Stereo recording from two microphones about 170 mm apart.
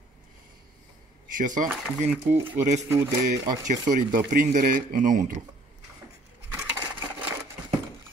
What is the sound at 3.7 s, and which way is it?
Speech, 50° right (ahead or behind).